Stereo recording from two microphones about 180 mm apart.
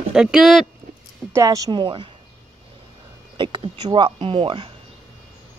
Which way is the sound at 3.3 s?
30° right (ahead or behind).